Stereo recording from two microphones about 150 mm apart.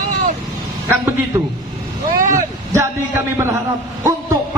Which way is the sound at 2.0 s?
70° right (ahead or behind).